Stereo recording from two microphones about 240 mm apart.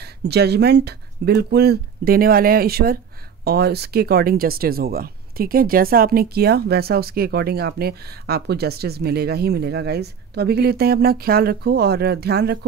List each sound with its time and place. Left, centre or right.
0.0 s speech: right